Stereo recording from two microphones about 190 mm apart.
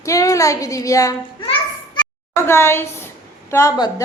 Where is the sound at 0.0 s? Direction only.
15° left (ahead or behind).